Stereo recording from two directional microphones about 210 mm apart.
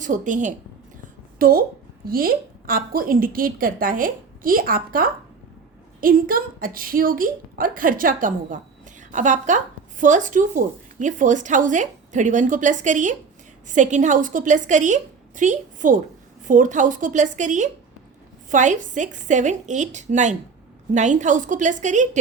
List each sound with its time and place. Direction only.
0.0 s a woman's voice: 35° right (ahead or behind)